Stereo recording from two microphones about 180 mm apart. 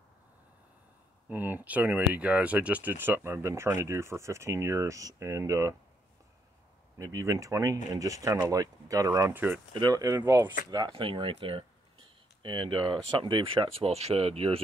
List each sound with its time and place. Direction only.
1.3 s speech: 10° right (ahead or behind)
7.0 s speech: 20° right (ahead or behind)